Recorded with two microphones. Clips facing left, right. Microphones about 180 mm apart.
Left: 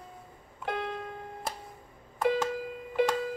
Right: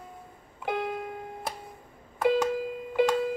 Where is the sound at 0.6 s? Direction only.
5° right (ahead or behind).